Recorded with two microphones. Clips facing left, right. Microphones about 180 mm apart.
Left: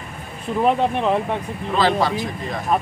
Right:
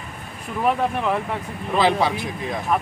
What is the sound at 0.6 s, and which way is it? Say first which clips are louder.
Speech: left 3 dB; 20° left (ahead or behind).